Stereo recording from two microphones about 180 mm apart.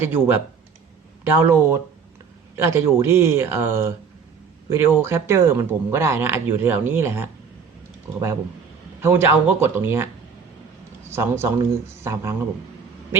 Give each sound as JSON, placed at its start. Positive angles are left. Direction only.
{"t": 0.0, "sound": "speech", "side_deg": -10}
{"t": 11.1, "sound": "speech", "side_deg": -15}